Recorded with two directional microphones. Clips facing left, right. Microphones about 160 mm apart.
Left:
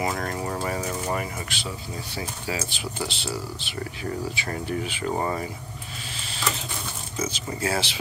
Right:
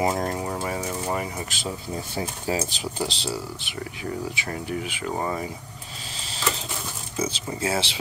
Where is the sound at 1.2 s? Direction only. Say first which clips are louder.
Right 1 dB; 25° right (ahead or behind).